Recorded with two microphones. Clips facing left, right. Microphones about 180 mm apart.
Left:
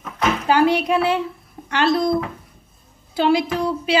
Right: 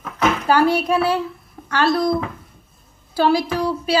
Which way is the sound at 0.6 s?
20° left (ahead or behind).